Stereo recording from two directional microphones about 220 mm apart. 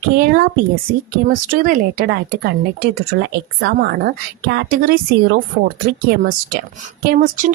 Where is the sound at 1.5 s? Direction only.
40° right (ahead or behind).